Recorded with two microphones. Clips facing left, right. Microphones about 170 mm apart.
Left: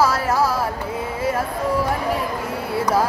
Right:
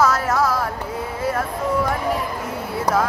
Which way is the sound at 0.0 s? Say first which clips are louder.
Even; 30° left (ahead or behind).